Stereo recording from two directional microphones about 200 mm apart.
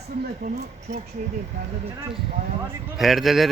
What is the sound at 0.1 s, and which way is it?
Speech, 45° right (ahead or behind).